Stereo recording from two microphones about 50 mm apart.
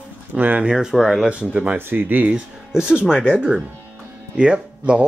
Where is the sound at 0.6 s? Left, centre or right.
Centre.